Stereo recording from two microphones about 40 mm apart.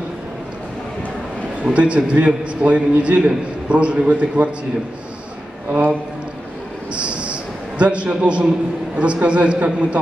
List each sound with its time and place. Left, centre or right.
1.6 s a man's voice: right
5.7 s a man's voice: right
7.0 s a sound: right
7.8 s a man's voice: right